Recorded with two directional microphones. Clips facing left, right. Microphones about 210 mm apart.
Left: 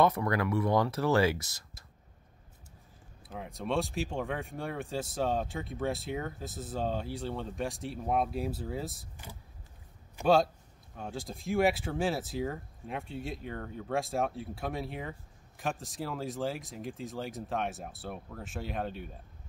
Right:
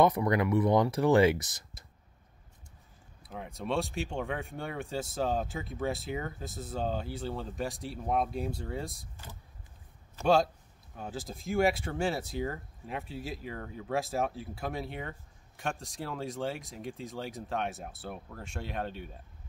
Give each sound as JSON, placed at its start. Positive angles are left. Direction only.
{"t": 0.0, "sound": "speech", "side_deg": -15}
{"t": 1.4, "sound": "a sound", "side_deg": -20}
{"t": 3.3, "sound": "speech", "side_deg": 0}
{"t": 9.1, "sound": "speech", "side_deg": 15}
{"t": 10.2, "sound": "speech", "side_deg": 0}